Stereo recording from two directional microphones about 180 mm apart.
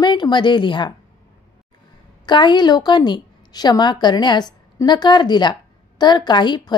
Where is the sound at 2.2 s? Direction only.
25° left (ahead or behind).